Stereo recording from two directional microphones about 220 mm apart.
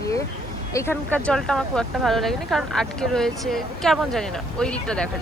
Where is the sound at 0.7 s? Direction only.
10° left (ahead or behind).